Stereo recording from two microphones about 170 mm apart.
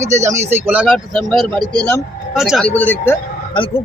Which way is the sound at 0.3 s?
10° right (ahead or behind).